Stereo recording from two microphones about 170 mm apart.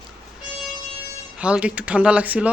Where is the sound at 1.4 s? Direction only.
5° right (ahead or behind).